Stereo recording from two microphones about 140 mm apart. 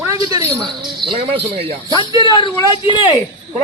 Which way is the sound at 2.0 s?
30° left (ahead or behind).